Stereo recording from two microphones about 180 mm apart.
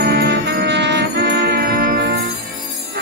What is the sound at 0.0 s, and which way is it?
Music, 60° right (ahead or behind).